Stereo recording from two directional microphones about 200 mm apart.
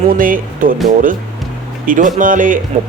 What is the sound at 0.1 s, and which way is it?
Speech, 45° right (ahead or behind).